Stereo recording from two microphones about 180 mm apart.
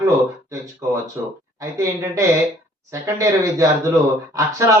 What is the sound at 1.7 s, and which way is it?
Speech, 15° right (ahead or behind).